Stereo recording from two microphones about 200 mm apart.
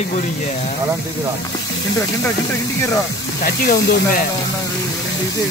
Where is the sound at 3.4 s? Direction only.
45° left (ahead or behind).